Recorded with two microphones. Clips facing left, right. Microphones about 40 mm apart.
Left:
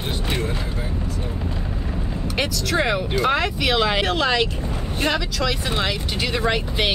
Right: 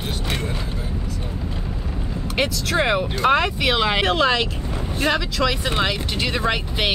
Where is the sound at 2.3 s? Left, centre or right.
Centre.